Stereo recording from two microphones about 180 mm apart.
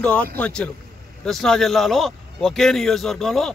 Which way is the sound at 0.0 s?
5° left (ahead or behind).